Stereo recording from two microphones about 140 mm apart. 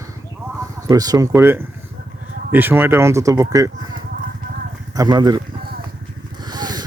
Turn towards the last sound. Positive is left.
turn(degrees=-30)  # may be behind; listen again after turning